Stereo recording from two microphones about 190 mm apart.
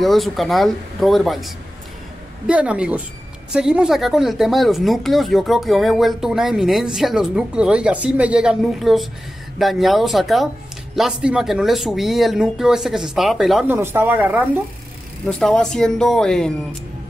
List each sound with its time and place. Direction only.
0.0 s speech: centre (ahead or behind)
13.7 s speech: 10° right (ahead or behind)
15.2 s speech: 5° left (ahead or behind)